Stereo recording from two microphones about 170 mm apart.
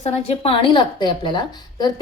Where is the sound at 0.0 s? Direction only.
35° left (ahead or behind).